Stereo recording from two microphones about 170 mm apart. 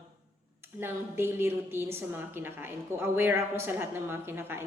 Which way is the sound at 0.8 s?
15° right (ahead or behind).